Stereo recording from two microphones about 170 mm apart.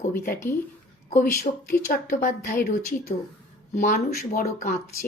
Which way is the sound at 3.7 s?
50° left (ahead or behind).